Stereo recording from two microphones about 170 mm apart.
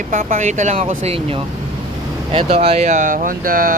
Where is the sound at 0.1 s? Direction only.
45° right (ahead or behind).